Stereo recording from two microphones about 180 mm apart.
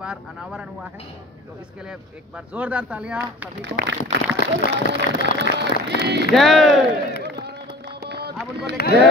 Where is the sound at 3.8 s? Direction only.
80° right.